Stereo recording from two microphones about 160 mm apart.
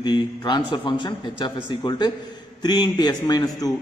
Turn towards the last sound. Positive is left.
turn(degrees=25)  # may be behind; listen again after turning